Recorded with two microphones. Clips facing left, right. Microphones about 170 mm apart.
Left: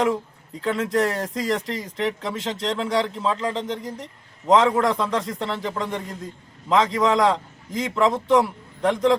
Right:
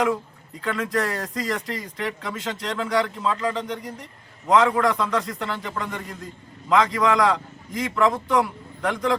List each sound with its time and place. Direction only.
0.6 s a man's voice: 25° left (ahead or behind)